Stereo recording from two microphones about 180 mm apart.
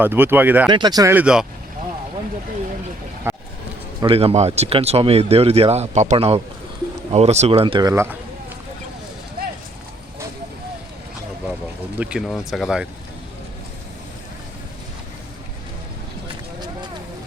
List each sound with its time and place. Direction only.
0.0 s speech: 10° right (ahead or behind)
0.7 s speech: 25° right (ahead or behind)
1.1 s speech: 5° right (ahead or behind)
3.3 s a sound: 15° right (ahead or behind)
4.0 s speech: 30° right (ahead or behind)
9.4 s clip-clop: 55° right (ahead or behind)
11.9 s speech: 5° right (ahead or behind)
16.3 s a sound: 25° right (ahead or behind)